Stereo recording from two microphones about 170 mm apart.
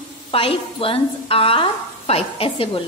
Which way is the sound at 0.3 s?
30° left (ahead or behind).